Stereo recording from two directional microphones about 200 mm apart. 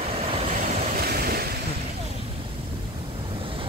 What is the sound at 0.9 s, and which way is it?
Waves, 50° right (ahead or behind).